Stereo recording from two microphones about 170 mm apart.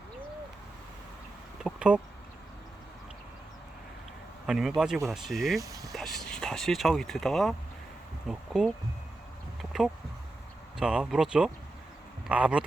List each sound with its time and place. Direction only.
1.6 s speech: 5° right (ahead or behind)
4.4 s speech: 5° right (ahead or behind)
5.5 s speech: 20° right (ahead or behind)
5.9 s speech: centre (ahead or behind)
9.6 s a sound: centre (ahead or behind)
10.8 s speech: 5° right (ahead or behind)